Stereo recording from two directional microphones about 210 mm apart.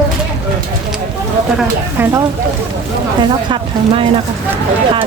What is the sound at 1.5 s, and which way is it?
Speech, 10° right (ahead or behind).